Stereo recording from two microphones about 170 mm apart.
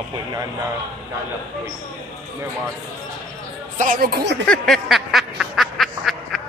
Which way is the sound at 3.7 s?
50° right (ahead or behind).